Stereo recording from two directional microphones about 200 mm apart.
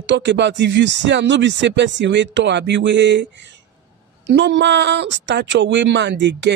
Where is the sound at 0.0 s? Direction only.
60° right (ahead or behind).